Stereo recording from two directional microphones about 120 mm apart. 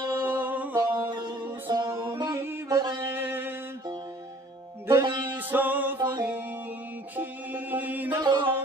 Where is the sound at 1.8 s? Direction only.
20° right (ahead or behind).